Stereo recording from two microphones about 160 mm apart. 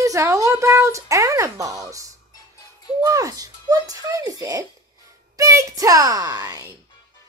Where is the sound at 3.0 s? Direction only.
20° right (ahead or behind).